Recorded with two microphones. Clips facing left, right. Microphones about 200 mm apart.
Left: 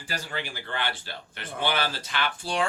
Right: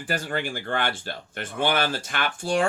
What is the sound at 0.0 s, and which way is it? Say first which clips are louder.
Speech: right 6 dB; 55° right (ahead or behind).